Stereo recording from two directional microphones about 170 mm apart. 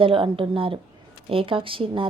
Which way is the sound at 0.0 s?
30° right (ahead or behind).